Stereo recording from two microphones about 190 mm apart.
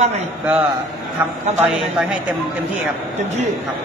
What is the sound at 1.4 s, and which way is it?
Speech, 35° right (ahead or behind).